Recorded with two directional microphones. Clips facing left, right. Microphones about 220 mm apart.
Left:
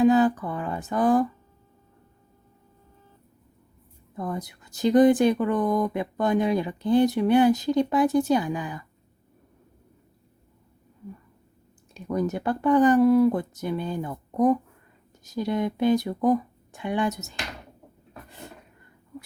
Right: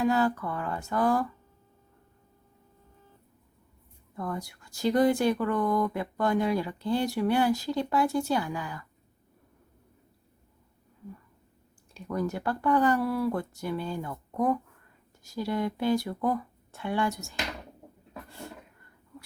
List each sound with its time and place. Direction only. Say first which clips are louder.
0.0 s speech: left 7 dB; 20° left (ahead or behind)
4.1 s speech: left 3 dB; 20° left (ahead or behind)
11.9 s speech: left 4 dB; 20° left (ahead or behind)